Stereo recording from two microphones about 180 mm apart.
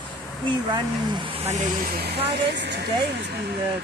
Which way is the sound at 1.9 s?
65° right (ahead or behind).